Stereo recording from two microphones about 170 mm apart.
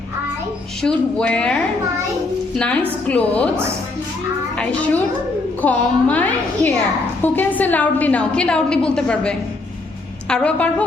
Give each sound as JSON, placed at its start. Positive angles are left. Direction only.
{"t": 0.8, "sound": "speech", "side_deg": 5}
{"t": 3.1, "sound": "a woman's voice", "side_deg": 10}
{"t": 4.5, "sound": "a woman's voice", "side_deg": 5}